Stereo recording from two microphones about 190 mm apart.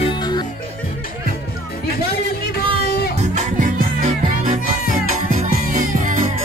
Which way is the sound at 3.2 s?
40° right (ahead or behind).